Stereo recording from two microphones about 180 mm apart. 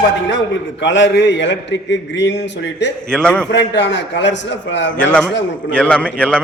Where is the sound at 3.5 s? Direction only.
80° left.